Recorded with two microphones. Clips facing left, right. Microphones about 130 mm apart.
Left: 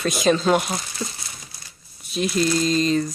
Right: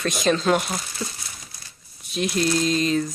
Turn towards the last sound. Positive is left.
turn(degrees=0)  # may be behind; listen again after turning